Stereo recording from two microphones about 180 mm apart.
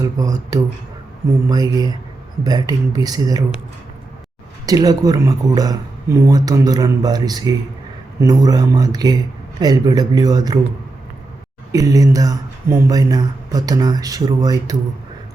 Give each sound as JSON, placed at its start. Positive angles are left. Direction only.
{"t": 0.0, "sound": "speech", "side_deg": -20}
{"t": 4.6, "sound": "speech", "side_deg": -20}
{"t": 11.7, "sound": "speech", "side_deg": -20}